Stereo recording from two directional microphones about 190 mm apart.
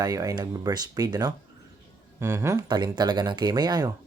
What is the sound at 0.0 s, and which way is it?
Speech, 20° right (ahead or behind).